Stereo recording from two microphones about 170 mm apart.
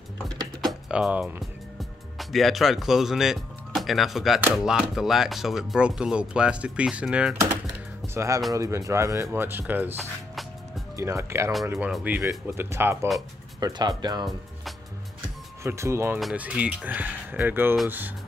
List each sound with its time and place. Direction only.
0.6 s music: centre (ahead or behind)
4.6 s speech: centre (ahead or behind)
11.0 s speech: 15° right (ahead or behind)
15.6 s speech: 15° right (ahead or behind)
16.2 s speech: 5° right (ahead or behind)